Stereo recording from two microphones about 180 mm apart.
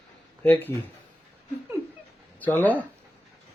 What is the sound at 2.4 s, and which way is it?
Speech, 10° left (ahead or behind).